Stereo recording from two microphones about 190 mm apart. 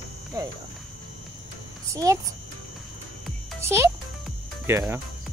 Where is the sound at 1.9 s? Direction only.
15° right (ahead or behind).